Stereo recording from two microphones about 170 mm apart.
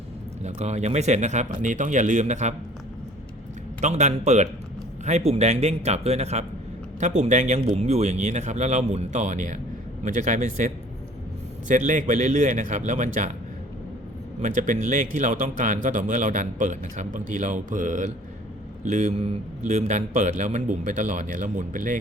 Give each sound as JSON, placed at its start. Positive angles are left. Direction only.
{"t": 0.4, "sound": "speech", "side_deg": -40}
{"t": 3.8, "sound": "speech", "side_deg": -45}
{"t": 11.7, "sound": "speech", "side_deg": -45}
{"t": 14.4, "sound": "speech", "side_deg": -45}